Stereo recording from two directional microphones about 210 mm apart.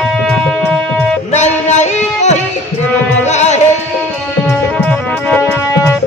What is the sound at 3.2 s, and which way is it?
Music, 35° left (ahead or behind).